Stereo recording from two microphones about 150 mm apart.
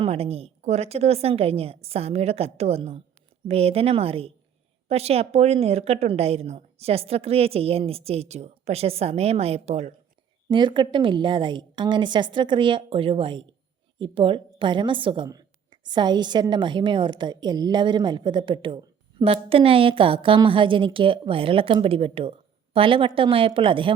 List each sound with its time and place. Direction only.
0.0 s a woman's voice: 40° right (ahead or behind)
10.5 s a woman's voice: 30° right (ahead or behind)